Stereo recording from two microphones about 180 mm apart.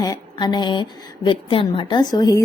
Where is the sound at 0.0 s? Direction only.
20° left (ahead or behind).